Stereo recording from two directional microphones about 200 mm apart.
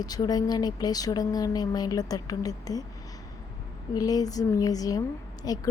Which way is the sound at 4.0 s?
20° left (ahead or behind).